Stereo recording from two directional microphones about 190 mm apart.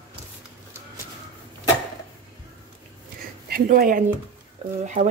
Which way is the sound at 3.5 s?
50° right (ahead or behind).